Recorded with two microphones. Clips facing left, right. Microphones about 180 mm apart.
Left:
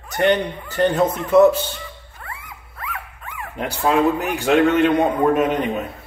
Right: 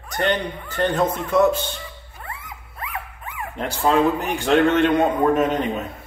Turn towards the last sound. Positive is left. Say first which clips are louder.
# left 1 dB
turn(degrees=0)  # may be behind; listen again after turning